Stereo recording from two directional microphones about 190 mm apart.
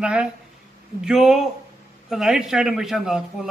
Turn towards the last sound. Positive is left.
turn(degrees=0)  # may be behind; listen again after turning